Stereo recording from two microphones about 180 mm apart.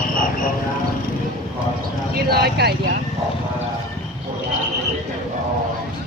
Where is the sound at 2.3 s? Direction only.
60° right (ahead or behind).